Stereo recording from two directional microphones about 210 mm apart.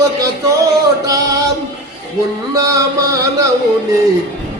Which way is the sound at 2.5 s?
15° right (ahead or behind).